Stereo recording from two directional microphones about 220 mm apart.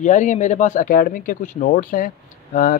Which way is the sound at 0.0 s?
35° left (ahead or behind).